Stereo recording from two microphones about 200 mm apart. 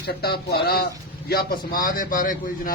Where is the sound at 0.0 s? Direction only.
50° left (ahead or behind).